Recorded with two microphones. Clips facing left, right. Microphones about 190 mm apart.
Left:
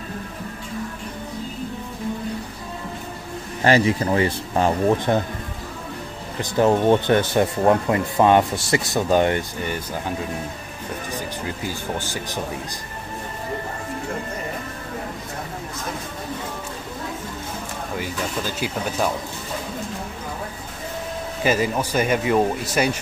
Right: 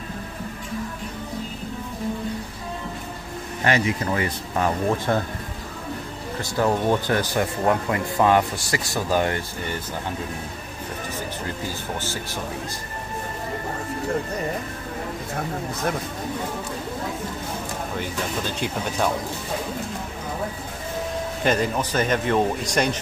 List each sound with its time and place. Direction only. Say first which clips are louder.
3.6 s speech: left 5 dB; 30° left (ahead or behind)
4.8 s speech: left 3 dB; 20° left (ahead or behind)
6.5 s speech: left 5 dB; 25° left (ahead or behind)
11.6 s speech: left 2 dB; 15° left (ahead or behind)
21.4 s speech: left 2 dB; 5° left (ahead or behind)